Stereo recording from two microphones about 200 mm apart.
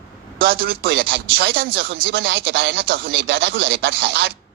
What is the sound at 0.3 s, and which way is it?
A man's voice, 50° right (ahead or behind).